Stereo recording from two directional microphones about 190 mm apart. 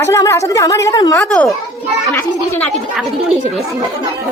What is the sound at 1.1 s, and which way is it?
A woman's voice, 5° left (ahead or behind).